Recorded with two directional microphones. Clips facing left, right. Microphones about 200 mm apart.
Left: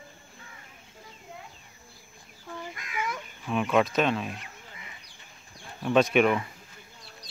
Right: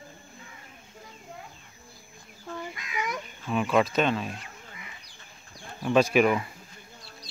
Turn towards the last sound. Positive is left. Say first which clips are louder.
# even
turn(degrees=0)  # may be behind; listen again after turning